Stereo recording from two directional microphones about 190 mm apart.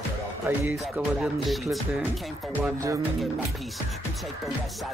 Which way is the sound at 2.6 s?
15° right (ahead or behind).